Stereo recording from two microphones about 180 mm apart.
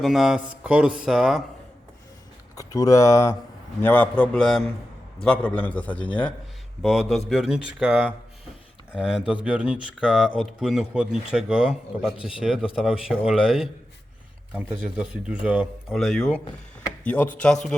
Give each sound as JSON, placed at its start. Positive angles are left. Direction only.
{"t": 0.0, "sound": "speech", "side_deg": 0}
{"t": 2.6, "sound": "a man's voice", "side_deg": 20}